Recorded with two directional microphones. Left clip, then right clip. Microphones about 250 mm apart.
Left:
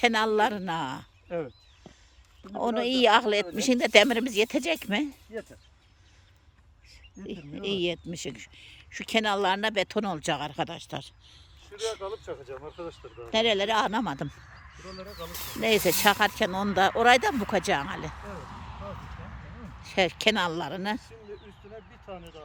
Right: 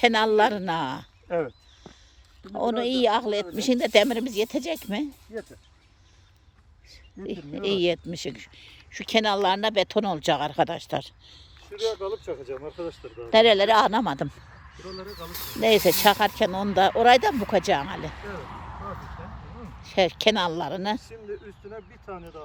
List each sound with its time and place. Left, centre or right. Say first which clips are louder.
0.0 s speech: right 4 dB; centre
1.3 s speech: right 6 dB; centre
2.5 s speech: right 2 dB; centre
7.3 s speech: right 5 dB; centre
11.7 s speech: right 5 dB; right
13.3 s speech: right 7 dB; centre
14.3 s a sound: right 2 dB; right
14.8 s speech: right 3 dB; centre
18.0 s speech: right 4 dB; right
19.8 s speech: right 3 dB; centre